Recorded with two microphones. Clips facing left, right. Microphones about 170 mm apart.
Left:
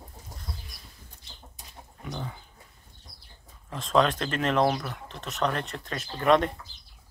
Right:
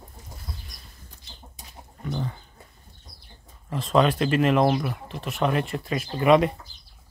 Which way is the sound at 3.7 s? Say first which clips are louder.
Right 3 dB; centre (ahead or behind).